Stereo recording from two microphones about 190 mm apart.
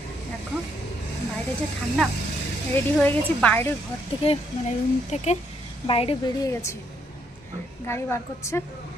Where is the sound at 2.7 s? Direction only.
10° left (ahead or behind).